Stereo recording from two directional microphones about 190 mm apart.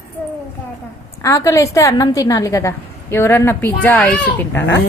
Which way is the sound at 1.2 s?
15° left (ahead or behind).